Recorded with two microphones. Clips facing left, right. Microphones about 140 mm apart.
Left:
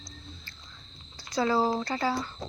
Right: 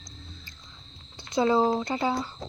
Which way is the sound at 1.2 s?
20° right (ahead or behind).